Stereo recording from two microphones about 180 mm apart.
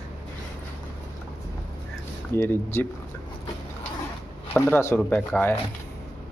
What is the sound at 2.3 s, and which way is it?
Speech, 15° left (ahead or behind).